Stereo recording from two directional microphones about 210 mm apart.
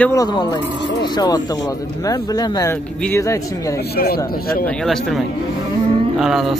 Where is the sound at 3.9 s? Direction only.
45° left (ahead or behind).